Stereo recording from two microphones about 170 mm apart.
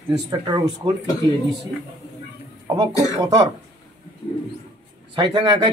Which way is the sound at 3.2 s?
25° right (ahead or behind).